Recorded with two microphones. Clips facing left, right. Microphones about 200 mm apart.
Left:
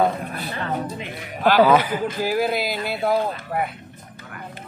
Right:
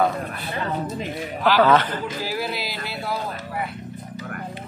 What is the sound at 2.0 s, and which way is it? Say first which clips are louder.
Speech: left 6 dB; 50° left (ahead or behind).